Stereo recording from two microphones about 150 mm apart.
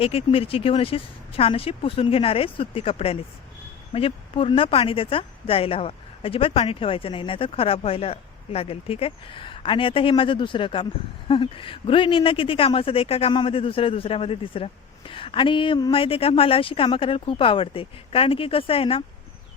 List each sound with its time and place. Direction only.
0.0 s a man's voice: 40° left (ahead or behind)